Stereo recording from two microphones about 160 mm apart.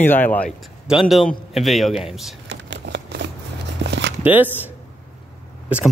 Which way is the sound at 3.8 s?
90° right.